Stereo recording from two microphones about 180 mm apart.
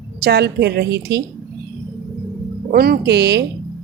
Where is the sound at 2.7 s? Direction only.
60° right (ahead or behind).